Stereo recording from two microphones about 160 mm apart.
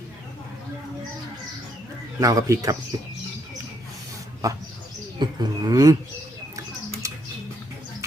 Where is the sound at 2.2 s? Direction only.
20° right (ahead or behind).